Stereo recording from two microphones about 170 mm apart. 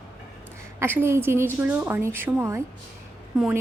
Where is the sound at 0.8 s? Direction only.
15° right (ahead or behind).